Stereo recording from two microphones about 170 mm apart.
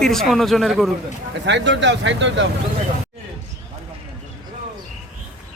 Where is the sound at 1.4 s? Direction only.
90° right.